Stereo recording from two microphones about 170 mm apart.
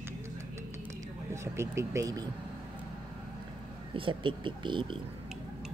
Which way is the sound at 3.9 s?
30° right (ahead or behind).